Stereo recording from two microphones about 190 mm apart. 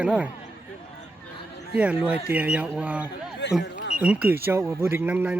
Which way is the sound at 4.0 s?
10° right (ahead or behind).